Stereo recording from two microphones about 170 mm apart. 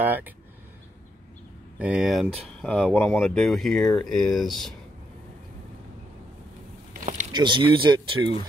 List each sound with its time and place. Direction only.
0.0 s speech: 10° right (ahead or behind)
1.8 s speech: 5° right (ahead or behind)
7.3 s speech: 30° right (ahead or behind)